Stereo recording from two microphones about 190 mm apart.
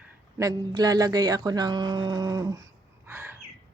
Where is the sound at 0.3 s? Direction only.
20° right (ahead or behind).